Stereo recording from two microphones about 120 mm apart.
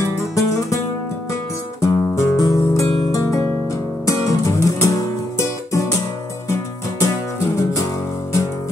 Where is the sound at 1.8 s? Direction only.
25° left (ahead or behind).